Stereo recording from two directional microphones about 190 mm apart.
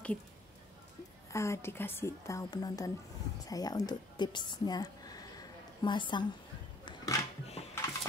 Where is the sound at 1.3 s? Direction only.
15° left (ahead or behind).